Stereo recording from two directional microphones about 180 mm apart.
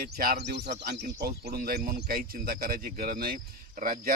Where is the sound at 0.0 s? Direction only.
55° right (ahead or behind); by 1.0 s 70° right (ahead or behind).